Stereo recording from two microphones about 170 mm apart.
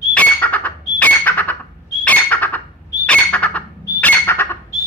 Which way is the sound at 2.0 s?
10° left (ahead or behind).